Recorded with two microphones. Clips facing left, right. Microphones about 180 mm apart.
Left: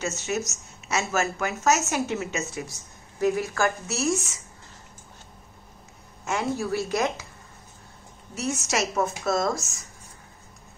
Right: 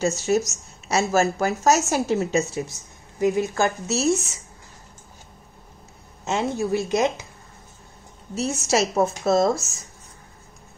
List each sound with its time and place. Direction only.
0.0 s a woman's voice: 35° right (ahead or behind)
3.2 s a woman's voice: 20° right (ahead or behind)
6.2 s a woman's voice: 20° right (ahead or behind)
8.4 s a woman's voice: 30° right (ahead or behind)